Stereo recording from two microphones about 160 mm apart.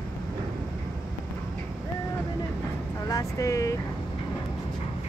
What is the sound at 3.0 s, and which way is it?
Vehicle, 20° left (ahead or behind).